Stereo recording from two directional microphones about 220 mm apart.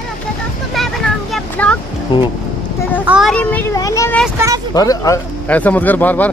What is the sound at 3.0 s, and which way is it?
Speech, 5° right (ahead or behind).